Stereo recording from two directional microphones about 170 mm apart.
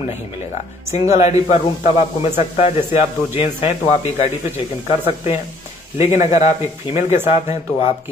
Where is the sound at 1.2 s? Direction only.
40° left (ahead or behind).